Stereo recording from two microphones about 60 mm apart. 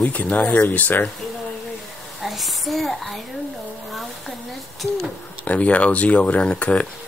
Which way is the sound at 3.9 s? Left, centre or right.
Centre.